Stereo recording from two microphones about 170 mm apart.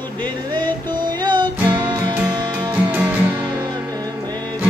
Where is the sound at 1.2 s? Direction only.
25° right (ahead or behind).